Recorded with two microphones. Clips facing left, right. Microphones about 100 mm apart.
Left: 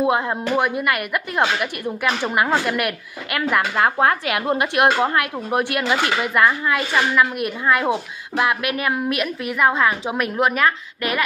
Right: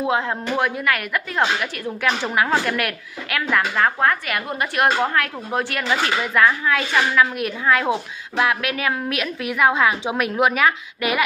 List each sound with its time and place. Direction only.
0.0 s a woman's voice: 10° left (ahead or behind); by 11.2 s 5° right (ahead or behind)